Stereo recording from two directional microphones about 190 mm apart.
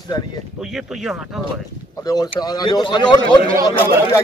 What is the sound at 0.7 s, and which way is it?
Speech, centre (ahead or behind).